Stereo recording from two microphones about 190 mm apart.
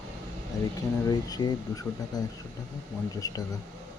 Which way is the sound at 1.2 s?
20° left (ahead or behind).